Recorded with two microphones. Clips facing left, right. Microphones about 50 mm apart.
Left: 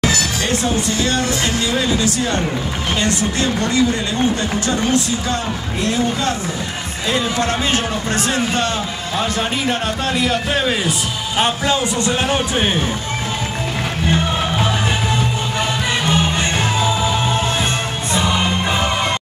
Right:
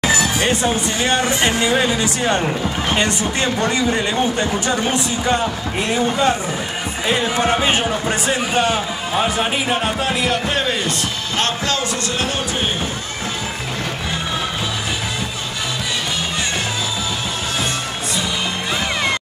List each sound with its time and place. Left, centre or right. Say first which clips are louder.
0.0 s a man's voice: right 2 dB; right; by 12.6 s left
18.1 s music: left 6 dB; left